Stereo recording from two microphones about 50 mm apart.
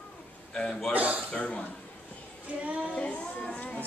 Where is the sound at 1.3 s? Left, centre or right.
Left.